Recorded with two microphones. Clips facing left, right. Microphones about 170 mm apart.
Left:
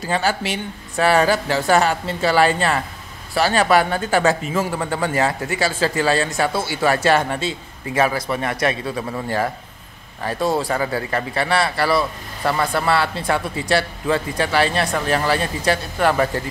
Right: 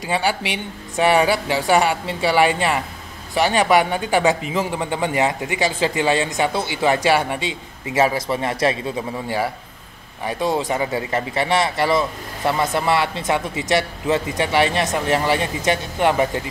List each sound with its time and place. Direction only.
0.0 s a man's voice: 15° right (ahead or behind)
7.9 s speech: 25° right (ahead or behind)
10.2 s speech: 15° right (ahead or behind)